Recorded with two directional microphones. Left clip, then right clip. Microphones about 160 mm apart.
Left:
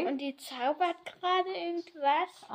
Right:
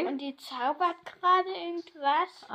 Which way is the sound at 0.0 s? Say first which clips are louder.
Even; 30° left (ahead or behind).